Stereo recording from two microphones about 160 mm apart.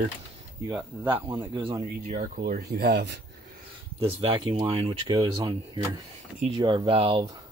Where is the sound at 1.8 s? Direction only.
50° right (ahead or behind); by 3.2 s 85° right.